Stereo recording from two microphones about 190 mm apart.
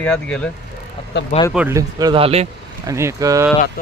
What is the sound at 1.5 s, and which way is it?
Speech, 10° right (ahead or behind).